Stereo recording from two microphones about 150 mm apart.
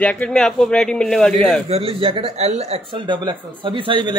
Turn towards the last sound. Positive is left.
turn(degrees=-35)  # may be behind; listen again after turning